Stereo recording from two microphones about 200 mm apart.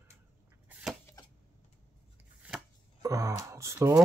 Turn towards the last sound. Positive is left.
turn(degrees=-15)  # may be behind; listen again after turning